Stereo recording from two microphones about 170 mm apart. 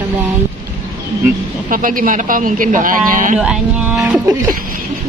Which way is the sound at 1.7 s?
55° right (ahead or behind).